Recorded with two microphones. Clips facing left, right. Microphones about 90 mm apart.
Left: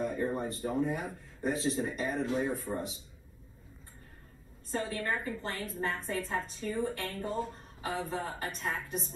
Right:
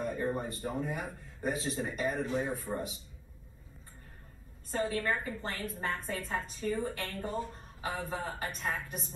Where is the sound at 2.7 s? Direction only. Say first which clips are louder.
Left 1 dB; 5° left (ahead or behind).